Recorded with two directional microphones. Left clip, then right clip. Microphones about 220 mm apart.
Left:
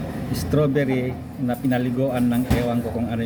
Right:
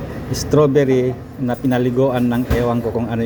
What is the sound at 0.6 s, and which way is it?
Speech, 10° right (ahead or behind).